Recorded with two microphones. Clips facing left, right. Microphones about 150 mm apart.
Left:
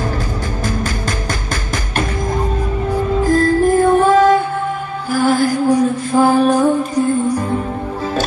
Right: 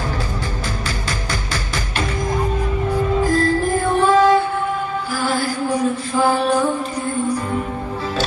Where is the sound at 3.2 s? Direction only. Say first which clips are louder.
Left 5 dB; 45° left (ahead or behind).